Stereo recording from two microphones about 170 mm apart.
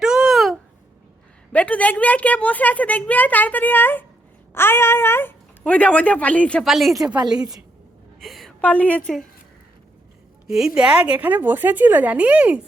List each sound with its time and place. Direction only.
0.0 s a sound: 5° right (ahead or behind)
1.5 s a woman's voice: 10° left (ahead or behind)
7.2 s a woman's voice: 25° right (ahead or behind)
8.2 s a woman's voice: centre (ahead or behind)
10.4 s a woman's voice: 5° right (ahead or behind)